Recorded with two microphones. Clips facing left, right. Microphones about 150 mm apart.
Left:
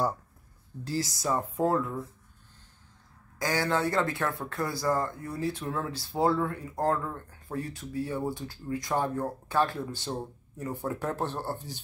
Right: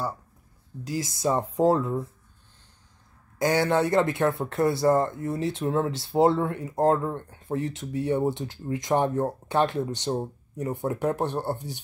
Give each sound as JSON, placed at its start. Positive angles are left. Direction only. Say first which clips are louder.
{"t": 0.8, "sound": "speech", "louder": "right 4 dB", "side_deg": -20}
{"t": 3.3, "sound": "speech", "louder": "right 6 dB", "side_deg": -20}